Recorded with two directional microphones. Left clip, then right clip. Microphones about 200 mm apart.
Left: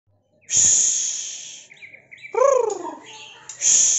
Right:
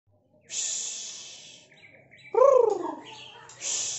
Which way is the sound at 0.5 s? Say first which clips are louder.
Left 14 dB; 5° right (ahead or behind).